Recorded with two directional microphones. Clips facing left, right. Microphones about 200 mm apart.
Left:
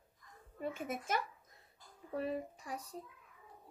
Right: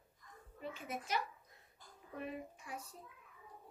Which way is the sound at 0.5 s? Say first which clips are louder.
Left 5 dB; 50° left (ahead or behind).